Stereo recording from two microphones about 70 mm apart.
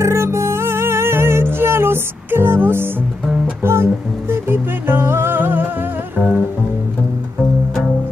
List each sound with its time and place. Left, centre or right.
0.0 s music: right